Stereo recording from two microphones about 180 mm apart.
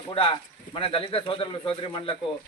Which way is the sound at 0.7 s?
30° left (ahead or behind).